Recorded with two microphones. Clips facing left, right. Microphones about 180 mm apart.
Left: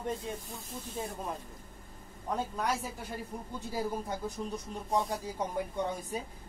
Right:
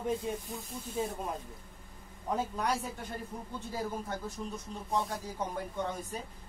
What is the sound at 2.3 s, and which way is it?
Speech, centre (ahead or behind).